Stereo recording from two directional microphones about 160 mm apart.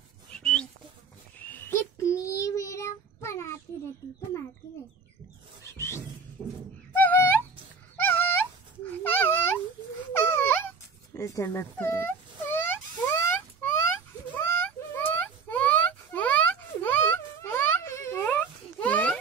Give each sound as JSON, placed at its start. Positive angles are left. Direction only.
{"t": 0.3, "sound": "a sound", "side_deg": 5}
{"t": 1.4, "sound": "child singing", "side_deg": 10}
{"t": 5.6, "sound": "rub", "side_deg": 20}
{"t": 6.9, "sound": "music", "side_deg": 10}
{"t": 8.0, "sound": "dog", "side_deg": 15}
{"t": 8.8, "sound": "baby cry", "side_deg": 10}
{"t": 10.2, "sound": "a sound", "side_deg": 15}
{"t": 11.1, "sound": "wail", "side_deg": 20}
{"t": 14.3, "sound": "a sound", "side_deg": 10}